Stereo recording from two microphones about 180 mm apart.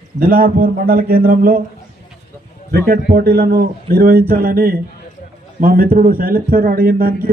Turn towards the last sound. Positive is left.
turn(degrees=-55)  # may be behind; listen again after turning